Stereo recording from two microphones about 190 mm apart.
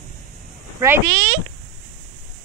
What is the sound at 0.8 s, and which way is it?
Speech, 15° right (ahead or behind).